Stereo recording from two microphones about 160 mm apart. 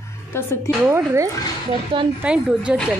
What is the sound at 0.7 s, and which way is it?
Speech, 15° right (ahead or behind).